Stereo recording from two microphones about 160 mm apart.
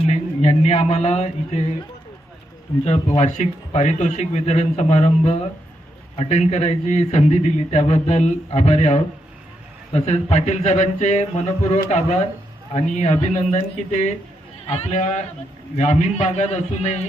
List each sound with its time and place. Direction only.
0.0 s speech: 40° left (ahead or behind)
3.2 s a man's voice: 45° left (ahead or behind)